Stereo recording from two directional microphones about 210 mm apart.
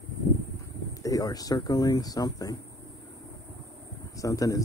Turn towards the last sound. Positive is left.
turn(degrees=15)  # may be behind; listen again after turning